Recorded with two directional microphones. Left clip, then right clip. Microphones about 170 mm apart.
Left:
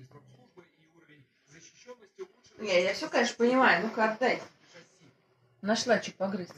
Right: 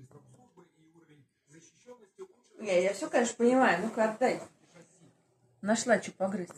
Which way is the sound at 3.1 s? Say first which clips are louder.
Even; 30° left (ahead or behind).